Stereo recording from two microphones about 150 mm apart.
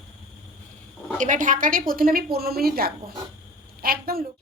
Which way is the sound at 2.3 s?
90° right.